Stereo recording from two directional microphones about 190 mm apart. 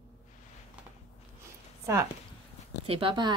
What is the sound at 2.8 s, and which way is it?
Speech, 30° right (ahead or behind).